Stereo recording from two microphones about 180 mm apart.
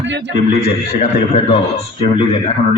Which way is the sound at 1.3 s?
35° left (ahead or behind).